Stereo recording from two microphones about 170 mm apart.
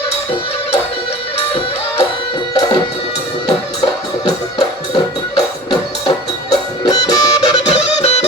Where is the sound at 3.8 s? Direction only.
20° left (ahead or behind).